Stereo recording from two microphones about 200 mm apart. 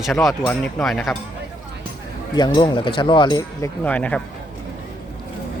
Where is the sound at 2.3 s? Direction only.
20° left (ahead or behind).